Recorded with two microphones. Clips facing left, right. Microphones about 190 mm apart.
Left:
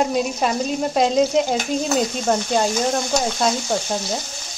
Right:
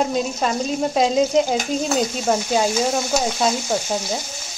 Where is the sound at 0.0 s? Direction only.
5° left (ahead or behind).